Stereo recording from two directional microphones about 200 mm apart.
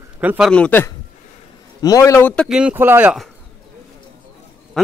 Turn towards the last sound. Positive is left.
turn(degrees=-5)  # may be behind; listen again after turning